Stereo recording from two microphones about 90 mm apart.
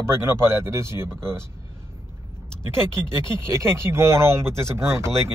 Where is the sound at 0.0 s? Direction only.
30° right (ahead or behind).